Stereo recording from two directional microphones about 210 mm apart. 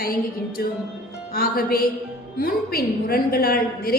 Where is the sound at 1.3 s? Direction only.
45° left (ahead or behind).